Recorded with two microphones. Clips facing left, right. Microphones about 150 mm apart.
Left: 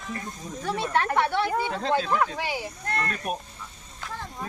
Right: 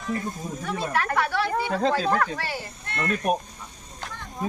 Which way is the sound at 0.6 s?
30° left (ahead or behind).